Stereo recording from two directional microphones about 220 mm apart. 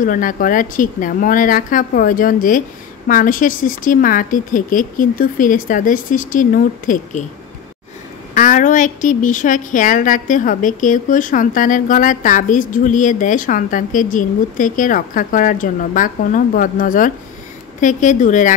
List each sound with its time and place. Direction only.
0.0 s a woman's voice: 40° left (ahead or behind)
8.4 s a woman's voice: 35° left (ahead or behind)